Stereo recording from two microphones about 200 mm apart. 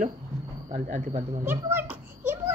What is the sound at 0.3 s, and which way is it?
Cricket, 20° left (ahead or behind).